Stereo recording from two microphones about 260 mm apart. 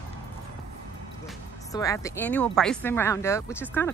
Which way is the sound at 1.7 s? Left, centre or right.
Centre.